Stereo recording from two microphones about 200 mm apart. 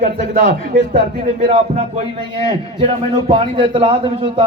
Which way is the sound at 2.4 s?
25° right (ahead or behind).